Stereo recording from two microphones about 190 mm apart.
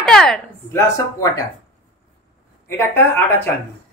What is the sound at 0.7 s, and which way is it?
Speech, 15° left (ahead or behind).